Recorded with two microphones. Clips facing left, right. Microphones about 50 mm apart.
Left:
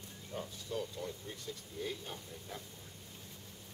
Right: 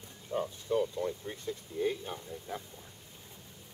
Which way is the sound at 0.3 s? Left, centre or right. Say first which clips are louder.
Right 10 dB; right.